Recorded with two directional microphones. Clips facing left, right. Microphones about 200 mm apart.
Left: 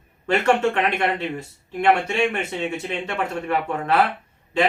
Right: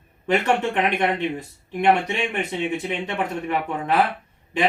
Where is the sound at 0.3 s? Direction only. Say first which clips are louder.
Left 2 dB; 15° right (ahead or behind).